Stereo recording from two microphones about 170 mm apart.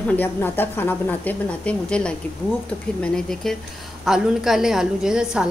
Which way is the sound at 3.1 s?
5° left (ahead or behind).